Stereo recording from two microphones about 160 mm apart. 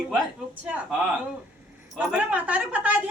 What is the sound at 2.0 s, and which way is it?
A woman's voice, 10° right (ahead or behind).